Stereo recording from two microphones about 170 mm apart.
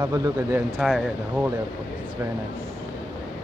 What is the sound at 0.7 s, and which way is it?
Speech, centre (ahead or behind).